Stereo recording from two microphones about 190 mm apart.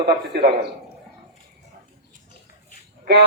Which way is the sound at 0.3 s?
60° right (ahead or behind).